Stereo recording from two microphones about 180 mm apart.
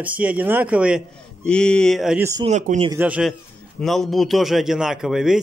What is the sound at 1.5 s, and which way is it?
Speech, 5° left (ahead or behind).